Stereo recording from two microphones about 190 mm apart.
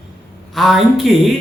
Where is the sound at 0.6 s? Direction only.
Centre (ahead or behind).